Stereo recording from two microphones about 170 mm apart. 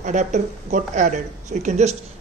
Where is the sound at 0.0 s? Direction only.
45° right (ahead or behind).